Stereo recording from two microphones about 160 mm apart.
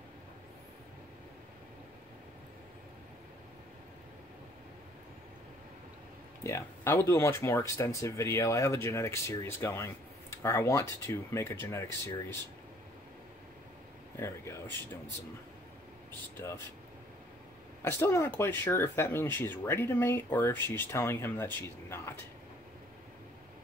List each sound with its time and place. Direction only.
6.4 s speech: 15° left (ahead or behind)
14.1 s speech: 15° left (ahead or behind)
16.1 s speech: 15° left (ahead or behind)
17.8 s speech: 15° left (ahead or behind)